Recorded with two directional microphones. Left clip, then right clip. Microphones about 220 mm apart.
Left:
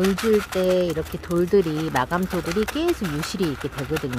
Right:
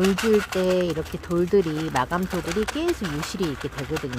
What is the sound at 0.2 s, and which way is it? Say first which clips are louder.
Speech: left 1 dB; centre (ahead or behind).